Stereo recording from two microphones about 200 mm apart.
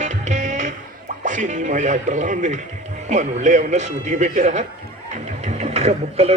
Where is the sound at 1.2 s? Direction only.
40° right (ahead or behind).